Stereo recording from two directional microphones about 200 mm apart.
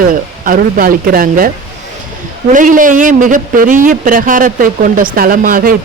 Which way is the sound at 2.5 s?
40° right (ahead or behind).